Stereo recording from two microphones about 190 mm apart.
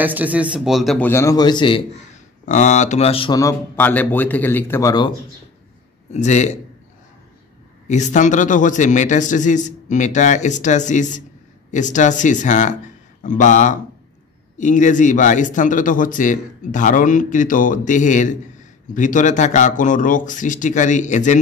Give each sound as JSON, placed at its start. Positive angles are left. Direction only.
{"t": 0.0, "sound": "a man's voice", "side_deg": -10}
{"t": 2.1, "sound": "speech", "side_deg": 40}
{"t": 6.1, "sound": "a man's voice", "side_deg": 35}
{"t": 7.9, "sound": "a man's voice", "side_deg": 40}